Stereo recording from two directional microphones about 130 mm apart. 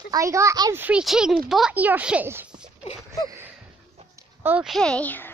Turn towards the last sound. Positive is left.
turn(degrees=15)  # may be behind; listen again after turning